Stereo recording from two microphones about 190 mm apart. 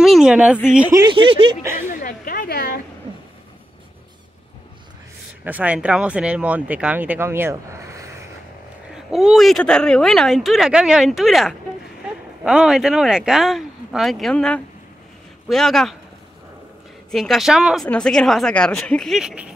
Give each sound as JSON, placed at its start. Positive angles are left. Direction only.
{"t": 0.0, "sound": "speech", "side_deg": -5}
{"t": 0.9, "sound": "speech", "side_deg": -25}
{"t": 1.9, "sound": "a sound", "side_deg": 45}
{"t": 5.4, "sound": "speech", "side_deg": -10}
{"t": 8.9, "sound": "speech", "side_deg": 0}
{"t": 17.1, "sound": "speech", "side_deg": 0}